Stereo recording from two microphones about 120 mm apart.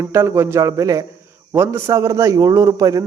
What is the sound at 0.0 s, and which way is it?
A man's voice, 25° right (ahead or behind).